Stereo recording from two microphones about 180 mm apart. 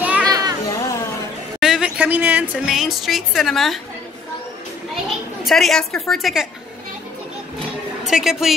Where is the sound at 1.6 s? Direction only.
5° right (ahead or behind).